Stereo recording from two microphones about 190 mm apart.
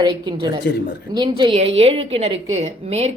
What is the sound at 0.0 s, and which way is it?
A woman's voice, 20° right (ahead or behind).